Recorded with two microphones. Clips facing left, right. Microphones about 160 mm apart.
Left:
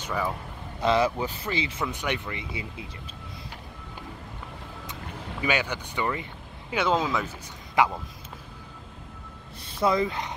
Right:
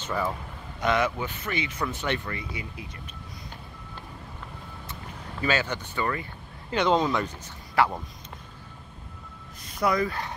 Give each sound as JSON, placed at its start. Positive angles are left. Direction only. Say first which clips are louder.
{"t": 0.7, "sound": "speech", "louder": "left 2 dB", "side_deg": 30}
{"t": 1.9, "sound": "speech", "louder": "right 1 dB", "side_deg": 15}
{"t": 5.4, "sound": "speech", "louder": "right 1 dB", "side_deg": 15}
{"t": 6.7, "sound": "speech", "louder": "right 2 dB", "side_deg": 5}
{"t": 7.8, "sound": "speech", "louder": "even", "side_deg": 15}
{"t": 9.7, "sound": "speech", "louder": "left 1 dB", "side_deg": 25}